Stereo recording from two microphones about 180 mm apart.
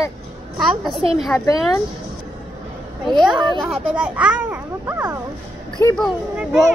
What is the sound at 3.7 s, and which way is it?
A child's voice, 5° right (ahead or behind).